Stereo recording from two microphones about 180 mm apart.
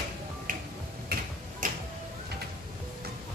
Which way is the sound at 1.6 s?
45° right (ahead or behind).